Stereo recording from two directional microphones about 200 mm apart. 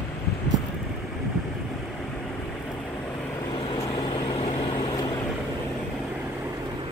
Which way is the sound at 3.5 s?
20° left (ahead or behind).